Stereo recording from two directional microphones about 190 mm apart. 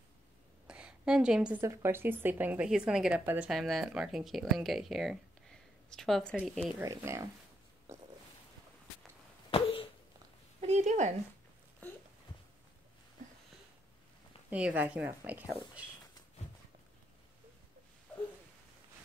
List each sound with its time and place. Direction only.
0.7 s a woman's voice: 5° right (ahead or behind)
6.8 s speech: 15° right (ahead or behind)
7.9 s a sound: 15° right (ahead or behind)
9.5 s a sound: 30° left (ahead or behind)
10.6 s speech: 35° right (ahead or behind)
14.5 s speech: 10° right (ahead or behind)